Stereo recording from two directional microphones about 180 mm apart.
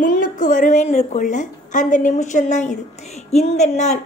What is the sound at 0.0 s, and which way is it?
A woman's voice, 45° left (ahead or behind).